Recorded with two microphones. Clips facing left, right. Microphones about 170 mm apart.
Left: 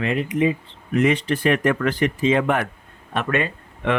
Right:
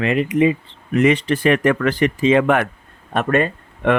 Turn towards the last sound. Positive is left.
turn(degrees=-50)  # may be behind; listen again after turning